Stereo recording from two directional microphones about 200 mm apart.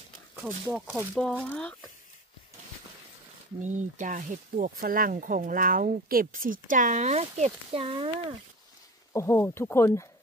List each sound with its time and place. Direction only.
0.9 s speech: 5° left (ahead or behind)
3.6 s speech: 40° right (ahead or behind)
9.1 s speech: 10° left (ahead or behind)